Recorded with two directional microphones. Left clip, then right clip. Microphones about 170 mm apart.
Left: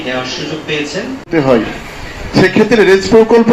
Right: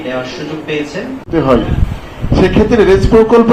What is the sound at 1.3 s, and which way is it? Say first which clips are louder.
A man's voice: even; 50° left (ahead or behind).